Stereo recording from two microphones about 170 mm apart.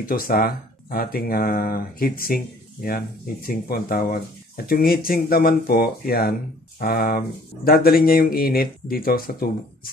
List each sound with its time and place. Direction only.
0.0 s speech: 55° left (ahead or behind)